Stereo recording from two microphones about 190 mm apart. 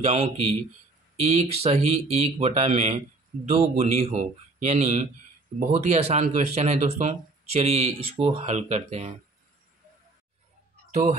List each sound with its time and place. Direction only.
0.0 s speech: 35° right (ahead or behind)
10.9 s speech: 35° right (ahead or behind)